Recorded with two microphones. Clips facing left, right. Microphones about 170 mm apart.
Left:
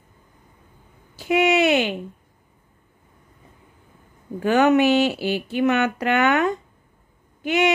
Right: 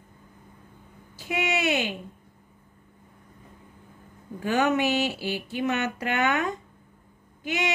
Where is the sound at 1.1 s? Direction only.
65° left (ahead or behind).